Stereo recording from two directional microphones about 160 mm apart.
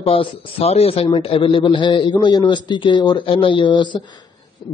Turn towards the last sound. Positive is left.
turn(degrees=30)  # may be behind; listen again after turning